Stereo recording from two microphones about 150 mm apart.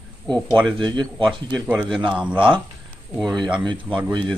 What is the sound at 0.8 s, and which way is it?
Speech, 30° right (ahead or behind).